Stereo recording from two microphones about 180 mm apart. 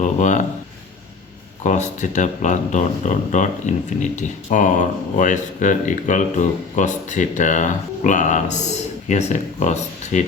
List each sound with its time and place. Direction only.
0.0 s speech: 45° left (ahead or behind)
1.6 s speech: 40° left (ahead or behind)